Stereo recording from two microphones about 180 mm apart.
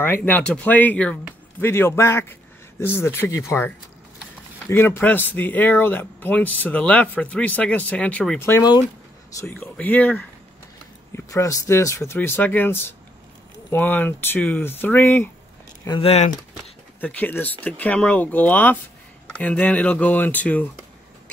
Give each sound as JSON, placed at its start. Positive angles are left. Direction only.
{"t": 0.0, "sound": "speech", "side_deg": 10}
{"t": 16.0, "sound": "speech", "side_deg": 35}
{"t": 17.0, "sound": "speech", "side_deg": 10}